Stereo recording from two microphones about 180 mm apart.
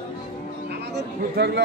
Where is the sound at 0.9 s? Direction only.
65° right (ahead or behind).